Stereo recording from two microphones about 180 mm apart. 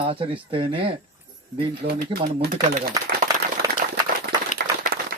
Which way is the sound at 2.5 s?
50° right (ahead or behind).